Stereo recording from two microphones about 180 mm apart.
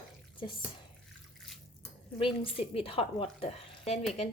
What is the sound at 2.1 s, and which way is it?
Speech, 30° left (ahead or behind).